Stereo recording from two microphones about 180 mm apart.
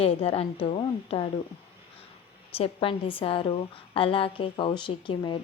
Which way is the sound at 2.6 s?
30° left (ahead or behind).